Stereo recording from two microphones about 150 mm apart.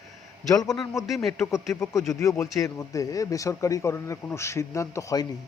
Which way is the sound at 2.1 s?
20° left (ahead or behind).